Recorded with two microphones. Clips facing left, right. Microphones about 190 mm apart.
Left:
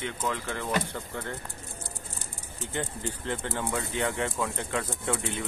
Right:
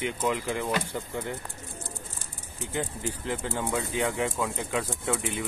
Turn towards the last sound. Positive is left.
turn(degrees=-5)  # may be behind; listen again after turning